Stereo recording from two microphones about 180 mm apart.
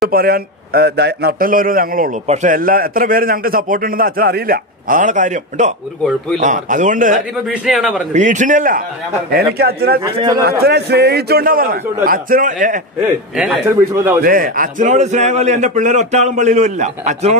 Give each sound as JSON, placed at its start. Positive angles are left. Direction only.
{"t": 0.1, "sound": "a man's voice", "side_deg": -60}
{"t": 2.2, "sound": "a man's voice", "side_deg": -40}
{"t": 7.4, "sound": "a man's voice", "side_deg": -5}
{"t": 8.1, "sound": "a man's voice", "side_deg": -45}
{"t": 9.6, "sound": "a man's voice", "side_deg": -60}
{"t": 13.0, "sound": "a man's voice", "side_deg": -15}
{"t": 14.2, "sound": "a man's voice", "side_deg": -50}